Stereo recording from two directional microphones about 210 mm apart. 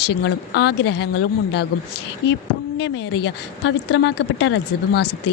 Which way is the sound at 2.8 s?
55° left (ahead or behind).